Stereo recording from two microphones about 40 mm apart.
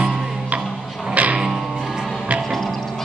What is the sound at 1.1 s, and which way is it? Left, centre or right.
Music, right.